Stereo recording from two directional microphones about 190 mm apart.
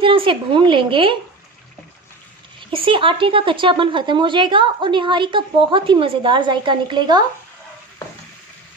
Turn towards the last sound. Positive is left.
turn(degrees=-25)  # may be behind; listen again after turning